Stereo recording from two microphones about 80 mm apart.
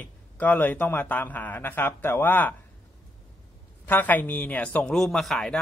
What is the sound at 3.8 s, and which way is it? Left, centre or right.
Speech, left.